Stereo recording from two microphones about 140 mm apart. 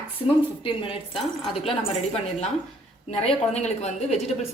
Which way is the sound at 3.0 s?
50° left (ahead or behind).